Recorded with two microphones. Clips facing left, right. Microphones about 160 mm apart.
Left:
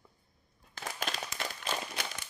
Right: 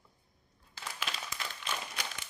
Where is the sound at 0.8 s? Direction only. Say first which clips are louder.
Left 4 dB; 45° left (ahead or behind).